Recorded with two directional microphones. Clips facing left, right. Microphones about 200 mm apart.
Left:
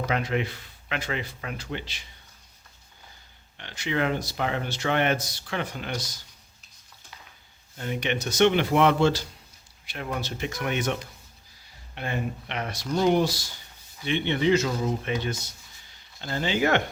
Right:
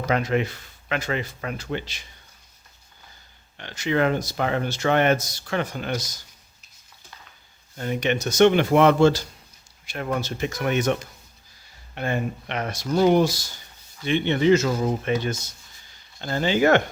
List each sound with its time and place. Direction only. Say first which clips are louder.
0.1 s speech: right 7 dB; 45° right (ahead or behind)
3.6 s speech: right 5 dB; 45° right (ahead or behind)
7.8 s speech: right 4 dB; 45° right (ahead or behind)
16.2 s speech: right 5 dB; 45° right (ahead or behind)